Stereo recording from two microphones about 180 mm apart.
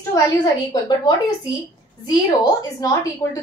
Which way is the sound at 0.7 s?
25° left (ahead or behind).